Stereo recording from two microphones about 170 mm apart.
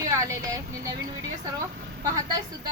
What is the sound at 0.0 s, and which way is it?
Speech, 20° right (ahead or behind).